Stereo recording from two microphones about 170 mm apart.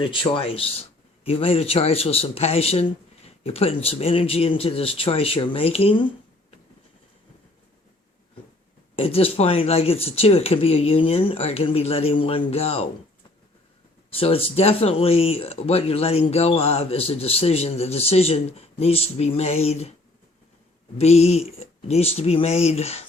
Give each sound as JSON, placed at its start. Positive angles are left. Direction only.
{"t": 0.0, "sound": "speech", "side_deg": 30}
{"t": 9.0, "sound": "speech", "side_deg": 35}
{"t": 14.2, "sound": "speech", "side_deg": 35}
{"t": 21.0, "sound": "speech", "side_deg": 40}